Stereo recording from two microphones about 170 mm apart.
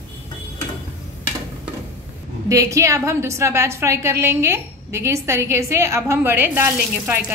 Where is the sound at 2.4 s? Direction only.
20° right (ahead or behind).